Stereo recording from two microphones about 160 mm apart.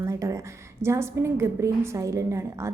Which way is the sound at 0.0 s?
20° right (ahead or behind).